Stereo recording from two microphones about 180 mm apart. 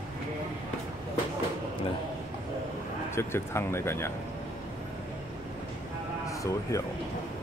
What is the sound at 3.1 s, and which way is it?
Speech, 15° left (ahead or behind).